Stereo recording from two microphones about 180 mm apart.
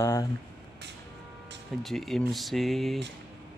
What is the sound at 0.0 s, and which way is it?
Speech, 15° left (ahead or behind).